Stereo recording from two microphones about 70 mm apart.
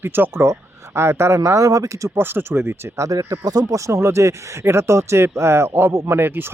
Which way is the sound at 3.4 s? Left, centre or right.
Right.